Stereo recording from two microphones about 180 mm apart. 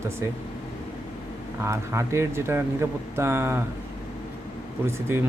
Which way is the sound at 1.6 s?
15° right (ahead or behind).